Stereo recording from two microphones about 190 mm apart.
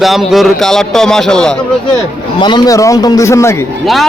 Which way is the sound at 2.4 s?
25° left (ahead or behind).